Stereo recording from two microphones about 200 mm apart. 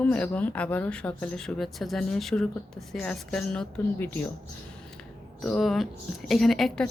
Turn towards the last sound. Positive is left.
turn(degrees=0)  # may be behind; listen again after turning